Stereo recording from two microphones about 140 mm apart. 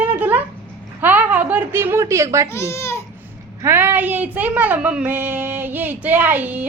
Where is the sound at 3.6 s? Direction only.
15° right (ahead or behind).